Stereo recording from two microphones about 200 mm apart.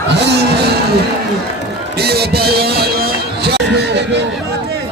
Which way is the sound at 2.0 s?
55° right (ahead or behind).